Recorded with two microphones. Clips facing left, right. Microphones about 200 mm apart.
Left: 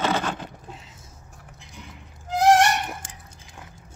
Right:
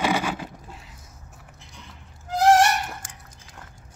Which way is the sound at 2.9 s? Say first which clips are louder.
Left 2 dB; 25° left (ahead or behind).